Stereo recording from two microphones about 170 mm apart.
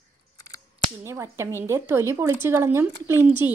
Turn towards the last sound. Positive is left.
turn(degrees=-15)  # may be behind; listen again after turning